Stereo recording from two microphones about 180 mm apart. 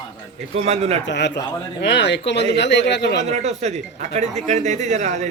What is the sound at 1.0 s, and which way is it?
Speech, 75° left (ahead or behind).